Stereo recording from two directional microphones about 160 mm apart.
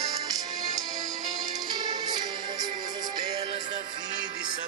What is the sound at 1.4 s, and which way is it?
Music, 25° right (ahead or behind).